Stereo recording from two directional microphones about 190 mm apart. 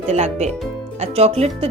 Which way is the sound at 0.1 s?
35° right (ahead or behind).